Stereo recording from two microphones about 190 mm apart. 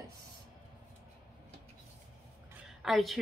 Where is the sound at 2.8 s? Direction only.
Centre (ahead or behind).